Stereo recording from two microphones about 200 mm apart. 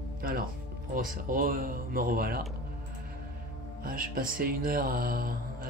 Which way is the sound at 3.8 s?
45° right (ahead or behind).